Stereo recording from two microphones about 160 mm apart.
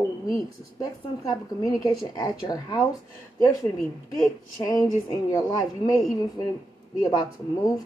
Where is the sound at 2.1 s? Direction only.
25° left (ahead or behind).